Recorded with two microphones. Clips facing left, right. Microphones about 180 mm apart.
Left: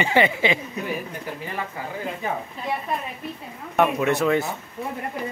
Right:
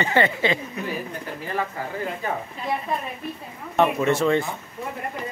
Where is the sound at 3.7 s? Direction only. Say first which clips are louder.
Even; 5° left (ahead or behind).